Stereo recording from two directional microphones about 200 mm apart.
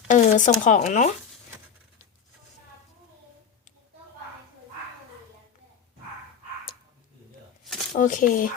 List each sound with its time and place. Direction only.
0.1 s shuffling cards: 40° left (ahead or behind)
0.6 s speech: 35° left (ahead or behind)
7.9 s speech: 40° left (ahead or behind)